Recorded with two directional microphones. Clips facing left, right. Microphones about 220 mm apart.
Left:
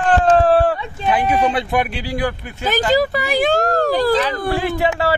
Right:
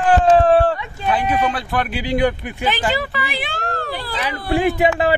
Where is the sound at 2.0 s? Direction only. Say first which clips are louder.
Right 4 dB; 20° right (ahead or behind).